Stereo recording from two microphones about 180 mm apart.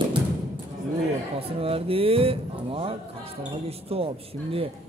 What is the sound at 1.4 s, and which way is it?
A man's voice, 30° right (ahead or behind).